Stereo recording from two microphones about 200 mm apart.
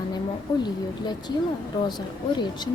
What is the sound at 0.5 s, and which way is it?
Speech, 20° left (ahead or behind).